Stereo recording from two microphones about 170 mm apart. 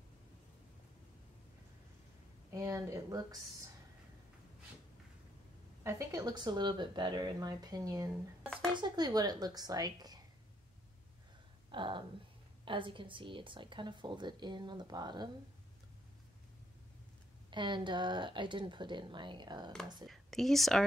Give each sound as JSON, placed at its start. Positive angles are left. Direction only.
{"t": 2.5, "sound": "speech", "side_deg": -15}
{"t": 5.9, "sound": "a woman's voice", "side_deg": -20}
{"t": 11.7, "sound": "a woman's voice", "side_deg": -30}
{"t": 17.5, "sound": "a woman's voice", "side_deg": -30}
{"t": 20.1, "sound": "speech", "side_deg": 0}